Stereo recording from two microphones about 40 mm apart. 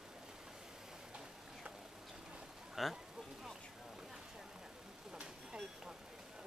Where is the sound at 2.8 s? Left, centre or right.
Centre.